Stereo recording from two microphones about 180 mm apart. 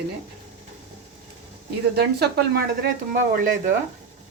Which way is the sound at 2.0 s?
60° right (ahead or behind).